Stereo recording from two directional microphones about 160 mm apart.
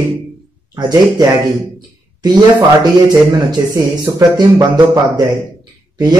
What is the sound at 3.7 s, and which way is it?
Speech, 25° right (ahead or behind).